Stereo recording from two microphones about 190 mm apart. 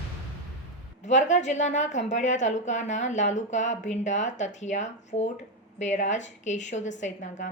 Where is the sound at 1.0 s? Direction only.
40° left (ahead or behind).